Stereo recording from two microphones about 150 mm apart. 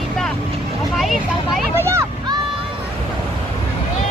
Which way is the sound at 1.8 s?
15° right (ahead or behind).